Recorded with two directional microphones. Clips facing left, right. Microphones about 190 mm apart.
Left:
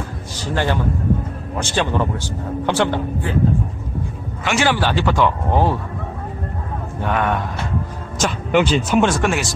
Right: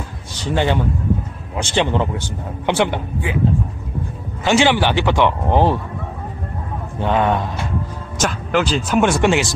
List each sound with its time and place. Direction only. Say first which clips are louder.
0.5 s a man's voice: right 2 dB; 20° right (ahead or behind)
4.5 s a man's voice: right 3 dB; 20° right (ahead or behind)
7.0 s a man's voice: right 3 dB; 25° right (ahead or behind)
8.2 s speech: left 2 dB; centre (ahead or behind)
9.2 s a man's voice: right 4 dB; 20° right (ahead or behind)